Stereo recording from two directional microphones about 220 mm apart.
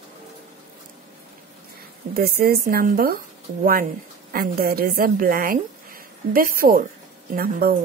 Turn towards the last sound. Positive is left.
turn(degrees=-40)  # may be behind; listen again after turning